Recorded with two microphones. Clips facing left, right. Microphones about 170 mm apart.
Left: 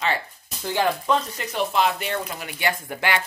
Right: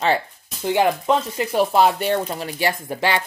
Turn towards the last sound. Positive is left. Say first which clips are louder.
# right 3 dB
turn(degrees=-25)  # may be behind; listen again after turning